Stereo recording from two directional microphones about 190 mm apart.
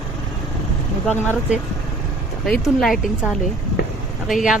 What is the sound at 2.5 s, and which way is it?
Speech, centre (ahead or behind).